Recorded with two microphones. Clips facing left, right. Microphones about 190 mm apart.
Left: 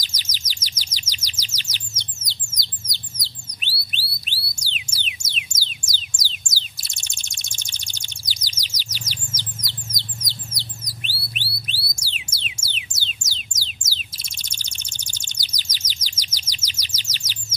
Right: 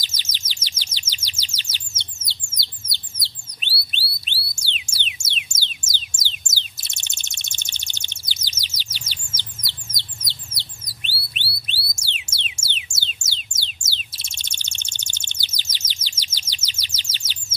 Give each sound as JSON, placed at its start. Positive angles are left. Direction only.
{"t": 0.0, "sound": "bird", "side_deg": -25}
{"t": 3.9, "sound": "music", "side_deg": -25}
{"t": 5.9, "sound": "a sound", "side_deg": -25}
{"t": 11.3, "sound": "music", "side_deg": -25}